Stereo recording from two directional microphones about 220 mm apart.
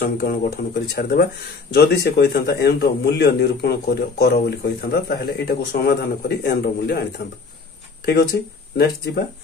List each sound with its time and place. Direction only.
0.0 s speech: 50° left (ahead or behind)